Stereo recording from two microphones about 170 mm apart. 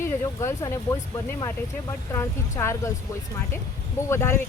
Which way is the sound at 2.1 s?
15° left (ahead or behind).